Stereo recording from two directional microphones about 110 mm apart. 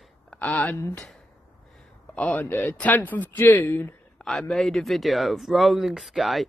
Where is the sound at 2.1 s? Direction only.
10° left (ahead or behind).